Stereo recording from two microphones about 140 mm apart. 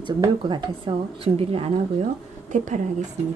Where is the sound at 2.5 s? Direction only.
60° right (ahead or behind).